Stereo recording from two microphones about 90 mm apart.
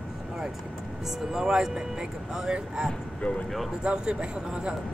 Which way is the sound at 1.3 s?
5° right (ahead or behind).